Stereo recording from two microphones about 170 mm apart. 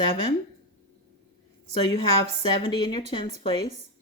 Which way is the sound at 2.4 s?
25° left (ahead or behind).